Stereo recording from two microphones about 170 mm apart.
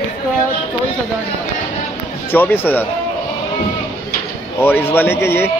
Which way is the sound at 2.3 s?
10° left (ahead or behind).